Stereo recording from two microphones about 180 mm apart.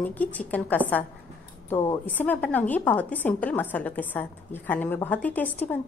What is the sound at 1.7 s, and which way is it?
Speech, 20° left (ahead or behind).